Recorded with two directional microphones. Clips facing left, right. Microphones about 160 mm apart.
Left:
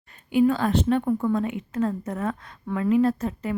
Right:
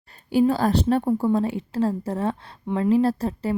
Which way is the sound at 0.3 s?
35° right (ahead or behind).